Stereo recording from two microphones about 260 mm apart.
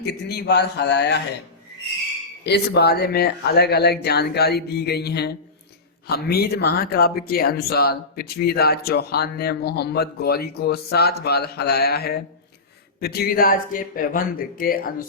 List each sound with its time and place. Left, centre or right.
0.0 s speech: left
2.4 s speech: left